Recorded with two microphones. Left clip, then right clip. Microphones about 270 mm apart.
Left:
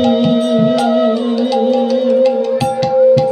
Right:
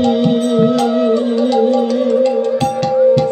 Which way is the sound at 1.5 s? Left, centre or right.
Left.